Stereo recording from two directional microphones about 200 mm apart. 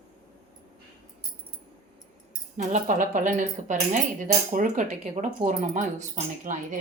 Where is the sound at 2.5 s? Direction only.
40° right (ahead or behind).